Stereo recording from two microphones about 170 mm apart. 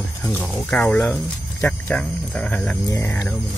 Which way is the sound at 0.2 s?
10° left (ahead or behind).